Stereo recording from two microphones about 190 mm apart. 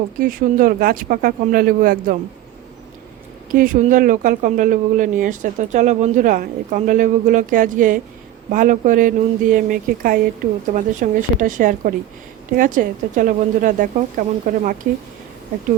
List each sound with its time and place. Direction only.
0.2 s speech: 45° right (ahead or behind)
3.5 s speech: 45° right (ahead or behind)